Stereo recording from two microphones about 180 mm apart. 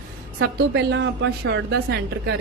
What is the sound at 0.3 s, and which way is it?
A woman's voice, 70° right (ahead or behind).